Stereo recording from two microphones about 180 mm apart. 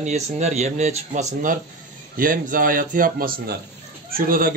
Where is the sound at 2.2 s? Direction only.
50° right (ahead or behind).